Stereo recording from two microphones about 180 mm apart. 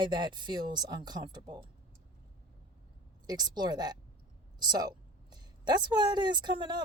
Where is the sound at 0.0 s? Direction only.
25° right (ahead or behind).